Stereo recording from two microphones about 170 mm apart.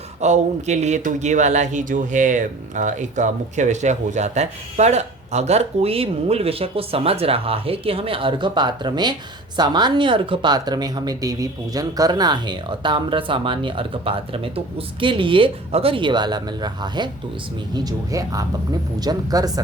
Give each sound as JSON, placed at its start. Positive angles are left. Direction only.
{"t": 0.2, "sound": "speech", "side_deg": -40}